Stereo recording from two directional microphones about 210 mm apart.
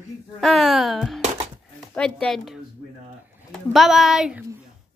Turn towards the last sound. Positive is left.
turn(degrees=0)  # may be behind; listen again after turning